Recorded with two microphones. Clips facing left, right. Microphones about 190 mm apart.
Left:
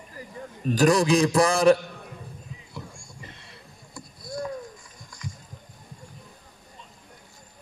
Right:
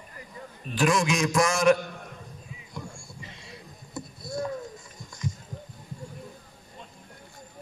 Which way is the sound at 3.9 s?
25° right (ahead or behind).